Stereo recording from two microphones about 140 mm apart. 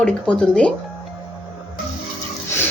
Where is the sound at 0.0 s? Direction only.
10° left (ahead or behind).